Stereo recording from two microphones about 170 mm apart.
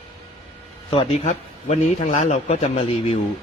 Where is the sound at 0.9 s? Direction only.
30° left (ahead or behind).